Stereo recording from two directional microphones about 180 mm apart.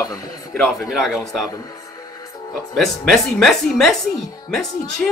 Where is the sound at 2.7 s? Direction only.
Centre (ahead or behind).